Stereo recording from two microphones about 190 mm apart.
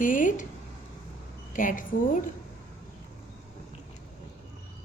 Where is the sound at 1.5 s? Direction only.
45° left (ahead or behind).